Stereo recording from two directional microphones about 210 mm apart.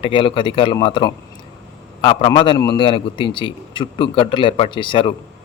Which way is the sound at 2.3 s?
20° left (ahead or behind).